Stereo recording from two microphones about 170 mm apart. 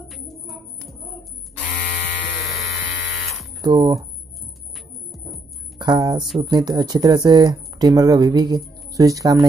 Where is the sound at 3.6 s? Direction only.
25° right (ahead or behind).